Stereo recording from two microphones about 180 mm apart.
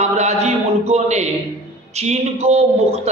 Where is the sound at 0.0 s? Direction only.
40° right (ahead or behind).